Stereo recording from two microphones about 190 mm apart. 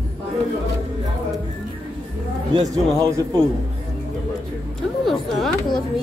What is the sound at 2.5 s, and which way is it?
Speech, 20° right (ahead or behind).